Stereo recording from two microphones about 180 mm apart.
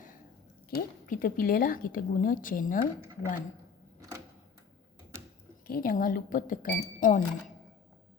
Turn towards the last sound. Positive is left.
turn(degrees=45)  # may be behind; listen again after turning